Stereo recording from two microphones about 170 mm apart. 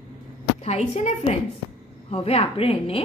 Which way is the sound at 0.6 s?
40° left (ahead or behind).